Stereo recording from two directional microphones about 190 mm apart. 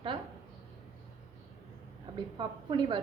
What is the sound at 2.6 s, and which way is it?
Speech, 25° right (ahead or behind).